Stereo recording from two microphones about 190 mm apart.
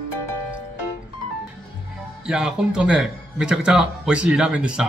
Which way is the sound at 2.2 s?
5° right (ahead or behind).